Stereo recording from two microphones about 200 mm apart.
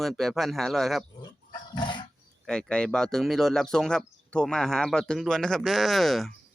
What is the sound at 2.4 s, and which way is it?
Speech, 5° left (ahead or behind).